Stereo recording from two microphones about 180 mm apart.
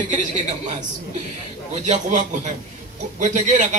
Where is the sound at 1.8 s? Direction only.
40° right (ahead or behind).